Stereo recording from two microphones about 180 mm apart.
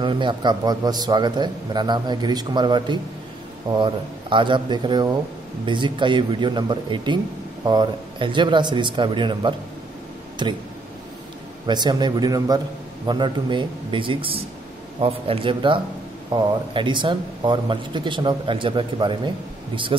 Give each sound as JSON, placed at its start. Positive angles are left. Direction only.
{"t": 0.0, "sound": "speech", "side_deg": -25}
{"t": 11.6, "sound": "speech", "side_deg": -25}